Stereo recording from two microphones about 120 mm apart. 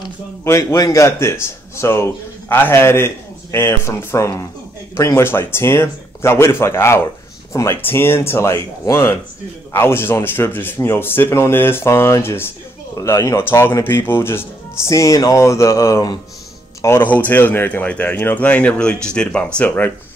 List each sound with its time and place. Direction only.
0.4 s speech: 25° left (ahead or behind)
16.8 s speech: 20° left (ahead or behind)